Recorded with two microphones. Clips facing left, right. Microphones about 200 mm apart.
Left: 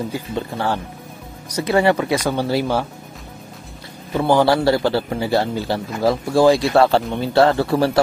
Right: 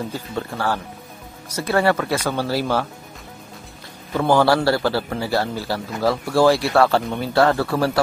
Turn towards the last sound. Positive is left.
turn(degrees=25)  # may be behind; listen again after turning